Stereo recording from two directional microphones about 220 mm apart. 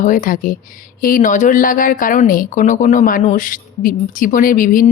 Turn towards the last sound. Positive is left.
turn(degrees=40)  # may be behind; listen again after turning